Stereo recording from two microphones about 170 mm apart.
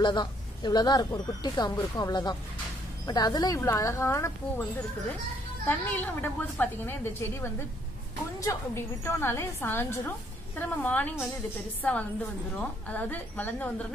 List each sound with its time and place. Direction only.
0.0 s speech: 25° left (ahead or behind)
5.7 s a woman's voice: 10° left (ahead or behind)